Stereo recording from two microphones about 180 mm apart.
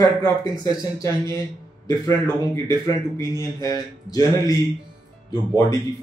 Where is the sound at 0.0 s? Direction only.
20° left (ahead or behind).